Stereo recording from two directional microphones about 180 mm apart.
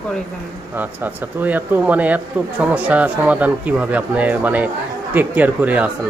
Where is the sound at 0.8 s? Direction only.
10° right (ahead or behind).